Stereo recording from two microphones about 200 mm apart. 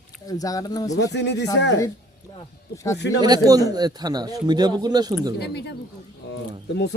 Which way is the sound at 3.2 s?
20° right (ahead or behind).